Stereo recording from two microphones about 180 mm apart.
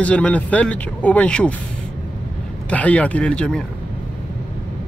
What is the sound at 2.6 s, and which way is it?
Speech, 5° left (ahead or behind).